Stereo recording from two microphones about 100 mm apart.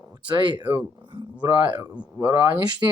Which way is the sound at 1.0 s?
55° right (ahead or behind).